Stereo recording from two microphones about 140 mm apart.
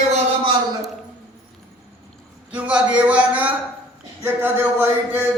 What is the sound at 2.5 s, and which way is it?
A man's voice, 10° right (ahead or behind).